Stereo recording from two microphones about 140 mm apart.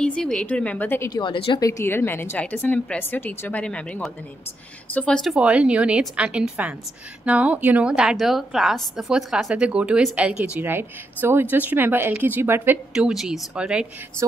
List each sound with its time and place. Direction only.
0.0 s a woman's voice: 5° left (ahead or behind)
1.1 s a woman's voice: 35° left (ahead or behind)
1.7 s a woman's voice: 20° left (ahead or behind); by 12.7 s 15° right (ahead or behind)
12.9 s a woman's voice: 5° right (ahead or behind)